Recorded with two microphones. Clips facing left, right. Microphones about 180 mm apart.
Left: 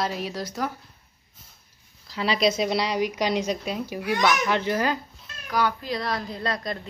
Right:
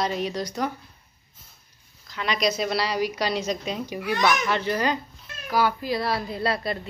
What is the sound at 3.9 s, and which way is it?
A woman's voice, 15° left (ahead or behind).